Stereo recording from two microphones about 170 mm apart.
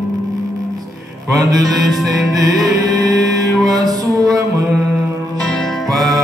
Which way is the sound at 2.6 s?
20° right (ahead or behind).